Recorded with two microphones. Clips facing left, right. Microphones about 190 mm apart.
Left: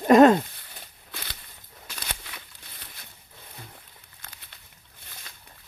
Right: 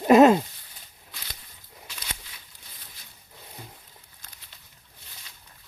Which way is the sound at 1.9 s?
55° left (ahead or behind).